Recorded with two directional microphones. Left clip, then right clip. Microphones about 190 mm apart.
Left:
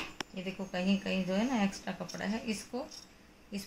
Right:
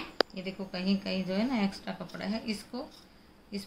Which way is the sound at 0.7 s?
30° left (ahead or behind).